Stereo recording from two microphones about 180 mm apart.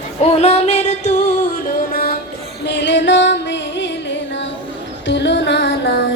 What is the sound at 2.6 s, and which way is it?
Music, 70° left (ahead or behind).